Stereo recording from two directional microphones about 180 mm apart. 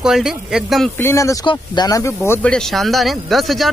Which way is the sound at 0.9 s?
15° left (ahead or behind).